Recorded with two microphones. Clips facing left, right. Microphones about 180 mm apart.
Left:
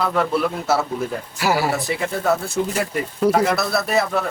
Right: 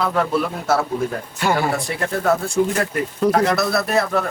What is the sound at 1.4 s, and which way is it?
Speech, 5° left (ahead or behind).